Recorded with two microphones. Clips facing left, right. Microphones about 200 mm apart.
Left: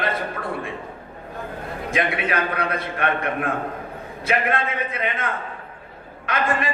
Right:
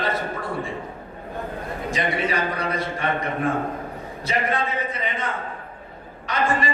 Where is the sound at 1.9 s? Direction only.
55° left (ahead or behind).